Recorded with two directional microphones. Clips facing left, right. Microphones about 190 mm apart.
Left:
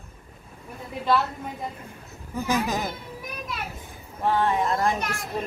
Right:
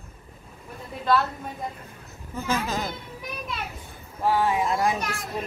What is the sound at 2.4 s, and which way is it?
Speech, 15° left (ahead or behind).